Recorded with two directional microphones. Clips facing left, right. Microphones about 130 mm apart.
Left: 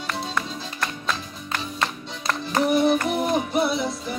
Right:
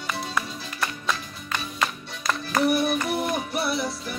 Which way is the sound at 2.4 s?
20° left (ahead or behind).